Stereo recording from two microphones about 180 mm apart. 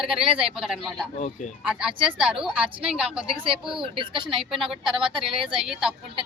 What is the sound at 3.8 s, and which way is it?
Speech, 30° right (ahead or behind).